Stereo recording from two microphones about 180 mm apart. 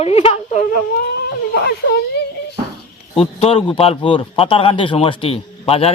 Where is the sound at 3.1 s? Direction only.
35° left (ahead or behind).